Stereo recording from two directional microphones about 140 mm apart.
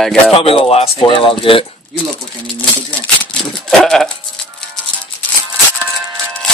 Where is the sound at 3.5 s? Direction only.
5° left (ahead or behind).